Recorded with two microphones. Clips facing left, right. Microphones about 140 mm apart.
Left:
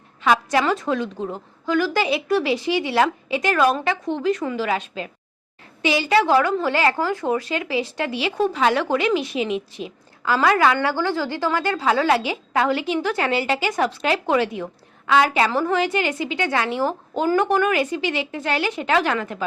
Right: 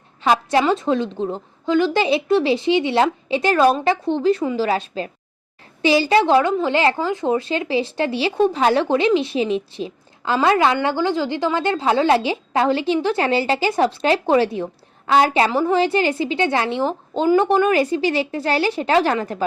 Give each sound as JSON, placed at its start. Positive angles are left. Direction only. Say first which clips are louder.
{"t": 0.2, "sound": "a woman's voice", "louder": "right 2 dB", "side_deg": -30}